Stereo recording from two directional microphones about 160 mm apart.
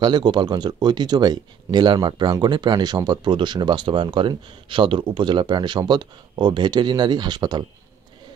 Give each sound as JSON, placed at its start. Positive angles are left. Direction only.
{"t": 0.0, "sound": "speech", "side_deg": -25}